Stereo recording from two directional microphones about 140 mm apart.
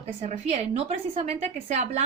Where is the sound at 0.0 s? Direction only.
50° right (ahead or behind).